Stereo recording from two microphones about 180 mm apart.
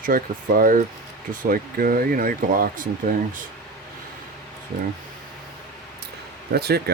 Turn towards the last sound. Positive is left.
turn(degrees=-60)  # may be behind; listen again after turning